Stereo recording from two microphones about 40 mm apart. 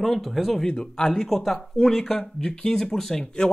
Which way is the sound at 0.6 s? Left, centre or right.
Centre.